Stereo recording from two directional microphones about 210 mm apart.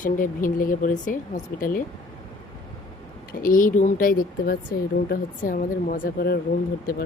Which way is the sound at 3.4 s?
40° left (ahead or behind).